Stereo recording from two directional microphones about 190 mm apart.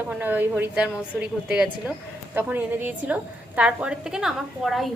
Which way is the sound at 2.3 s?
10° right (ahead or behind).